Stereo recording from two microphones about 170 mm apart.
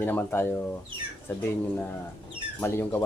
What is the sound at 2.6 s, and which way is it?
Speech, 15° left (ahead or behind).